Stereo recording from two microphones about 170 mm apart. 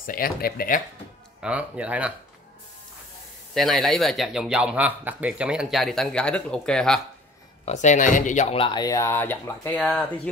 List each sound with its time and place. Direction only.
0.0 s speech: 55° left (ahead or behind)
1.4 s speech: 5° right (ahead or behind)
3.5 s a man's voice: centre (ahead or behind)
7.6 s speech: 45° left (ahead or behind); by 10.3 s 5° left (ahead or behind)